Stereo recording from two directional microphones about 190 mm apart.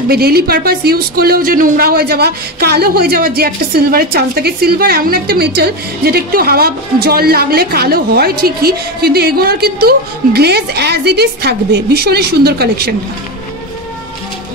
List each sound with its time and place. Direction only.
0.1 s speech: 55° right (ahead or behind)